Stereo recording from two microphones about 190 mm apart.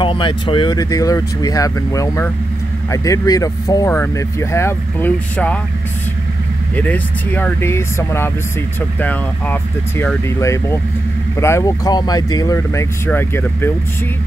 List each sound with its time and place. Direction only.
0.0 s speech: 25° left (ahead or behind); by 5.6 s 10° left (ahead or behind)
6.7 s speech: 10° left (ahead or behind)